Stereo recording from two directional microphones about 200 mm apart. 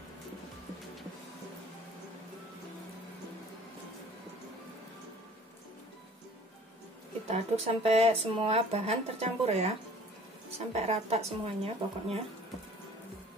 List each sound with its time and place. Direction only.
7.2 s speech: 30° right (ahead or behind)
10.7 s speech: 30° right (ahead or behind)